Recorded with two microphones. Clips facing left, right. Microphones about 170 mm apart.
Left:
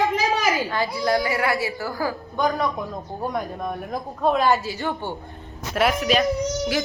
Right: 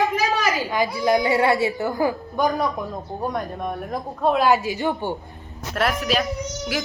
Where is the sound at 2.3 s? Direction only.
Centre (ahead or behind).